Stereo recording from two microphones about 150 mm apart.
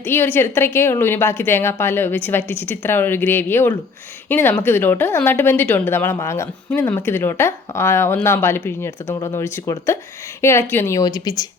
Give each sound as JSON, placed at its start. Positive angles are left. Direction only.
{"t": 0.0, "sound": "a woman's voice", "side_deg": 15}